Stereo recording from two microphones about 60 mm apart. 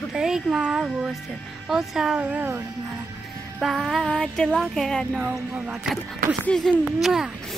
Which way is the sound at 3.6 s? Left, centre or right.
Centre.